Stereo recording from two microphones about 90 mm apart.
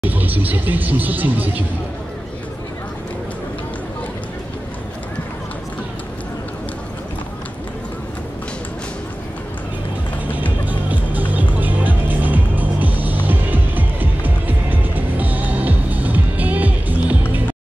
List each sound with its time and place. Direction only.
0.1 s speech: 20° right (ahead or behind)
10.7 s music: 20° right (ahead or behind)